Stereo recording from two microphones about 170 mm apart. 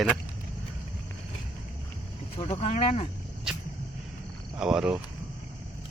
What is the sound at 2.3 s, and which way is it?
Speech, 35° left (ahead or behind).